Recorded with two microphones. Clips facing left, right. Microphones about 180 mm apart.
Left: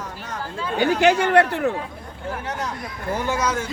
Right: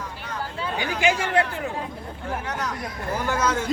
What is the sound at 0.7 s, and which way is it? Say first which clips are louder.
Speech: left 7 dB; 60° left (ahead or behind).